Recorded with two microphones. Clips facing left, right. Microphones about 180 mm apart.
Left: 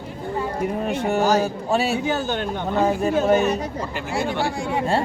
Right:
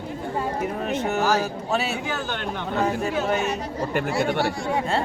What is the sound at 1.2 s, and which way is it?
Speech, 20° left (ahead or behind).